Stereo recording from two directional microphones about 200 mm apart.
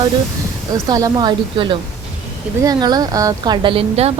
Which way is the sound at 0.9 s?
20° right (ahead or behind).